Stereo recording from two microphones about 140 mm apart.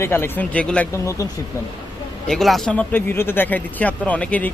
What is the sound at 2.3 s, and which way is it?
Speech, centre (ahead or behind).